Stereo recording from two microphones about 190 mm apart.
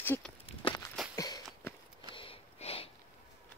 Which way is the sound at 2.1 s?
30° left (ahead or behind).